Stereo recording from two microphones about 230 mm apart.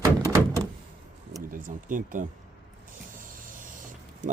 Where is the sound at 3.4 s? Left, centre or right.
Right.